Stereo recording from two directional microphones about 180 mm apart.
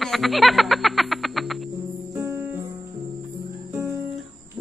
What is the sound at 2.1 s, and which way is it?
Music, 15° right (ahead or behind).